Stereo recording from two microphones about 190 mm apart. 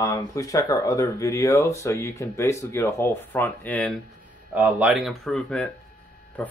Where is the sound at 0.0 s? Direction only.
15° left (ahead or behind).